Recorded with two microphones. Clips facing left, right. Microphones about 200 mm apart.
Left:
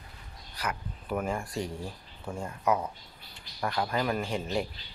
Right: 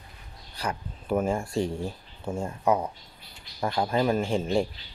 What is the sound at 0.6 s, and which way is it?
Speech, 30° right (ahead or behind).